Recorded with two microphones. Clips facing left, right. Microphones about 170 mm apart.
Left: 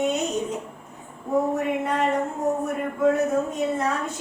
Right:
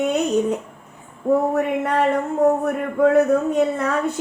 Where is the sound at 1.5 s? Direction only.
65° right (ahead or behind).